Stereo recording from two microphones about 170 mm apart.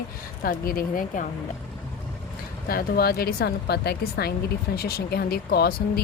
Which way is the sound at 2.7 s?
60° left (ahead or behind).